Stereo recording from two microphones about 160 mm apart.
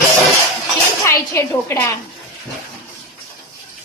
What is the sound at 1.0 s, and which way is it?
Speech, 20° left (ahead or behind).